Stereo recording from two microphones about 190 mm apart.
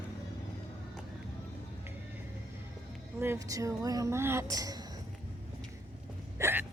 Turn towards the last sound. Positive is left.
turn(degrees=-10)  # may be behind; listen again after turning